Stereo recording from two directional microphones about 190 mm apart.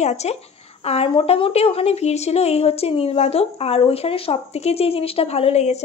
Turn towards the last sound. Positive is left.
turn(degrees=35)  # may be behind; listen again after turning